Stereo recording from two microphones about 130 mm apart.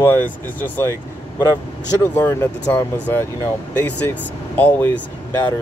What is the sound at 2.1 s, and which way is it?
Speech, 20° left (ahead or behind).